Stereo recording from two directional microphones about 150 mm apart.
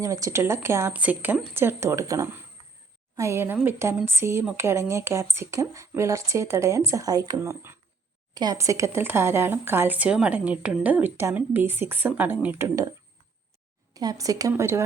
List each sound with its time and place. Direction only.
0.0 s speech: 20° right (ahead or behind)
13.9 s speech: 25° right (ahead or behind)